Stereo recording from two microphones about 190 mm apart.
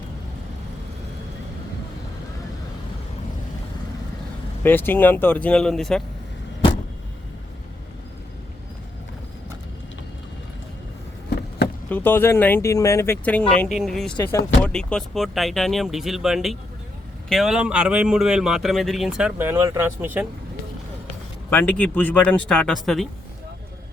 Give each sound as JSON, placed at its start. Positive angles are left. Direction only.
{"t": 4.6, "sound": "speech", "side_deg": 10}
{"t": 11.9, "sound": "speech", "side_deg": 10}
{"t": 21.5, "sound": "speech", "side_deg": 10}